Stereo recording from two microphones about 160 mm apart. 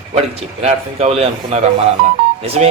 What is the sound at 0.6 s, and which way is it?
A man's voice, 40° right (ahead or behind).